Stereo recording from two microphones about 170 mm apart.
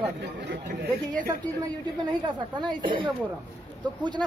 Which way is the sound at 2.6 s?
30° right (ahead or behind).